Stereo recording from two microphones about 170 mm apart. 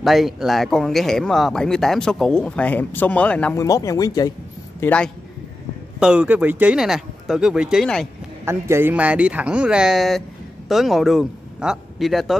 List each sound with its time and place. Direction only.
0.0 s speech: centre (ahead or behind)
3.5 s speech: 20° left (ahead or behind)
4.7 s a man's voice: 10° left (ahead or behind)
5.9 s speech: 5° right (ahead or behind)
8.5 s speech: 15° right (ahead or behind)